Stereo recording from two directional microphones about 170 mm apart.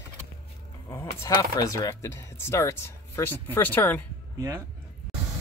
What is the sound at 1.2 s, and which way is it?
Speech, 20° left (ahead or behind).